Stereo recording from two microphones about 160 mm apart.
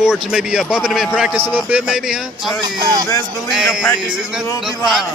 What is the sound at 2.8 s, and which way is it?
Speech, 25° right (ahead or behind).